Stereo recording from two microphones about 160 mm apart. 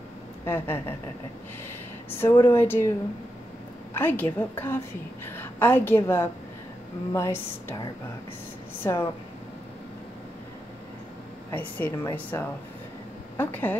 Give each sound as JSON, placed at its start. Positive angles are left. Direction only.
{"t": 0.5, "sound": "a woman's voice", "side_deg": 15}
{"t": 2.0, "sound": "a woman's voice", "side_deg": 15}
{"t": 3.9, "sound": "a woman's voice", "side_deg": 10}
{"t": 8.8, "sound": "speech", "side_deg": 20}
{"t": 11.5, "sound": "a woman's voice", "side_deg": 10}